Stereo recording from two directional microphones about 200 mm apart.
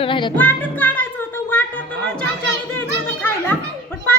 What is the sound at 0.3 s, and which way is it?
Music, 10° left (ahead or behind).